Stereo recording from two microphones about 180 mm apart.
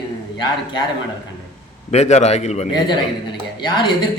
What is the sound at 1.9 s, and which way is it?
Speech, 40° left (ahead or behind).